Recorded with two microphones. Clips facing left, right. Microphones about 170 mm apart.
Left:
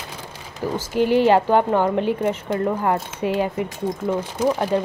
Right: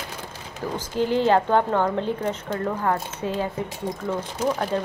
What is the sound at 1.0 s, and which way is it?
Speech, 65° left (ahead or behind).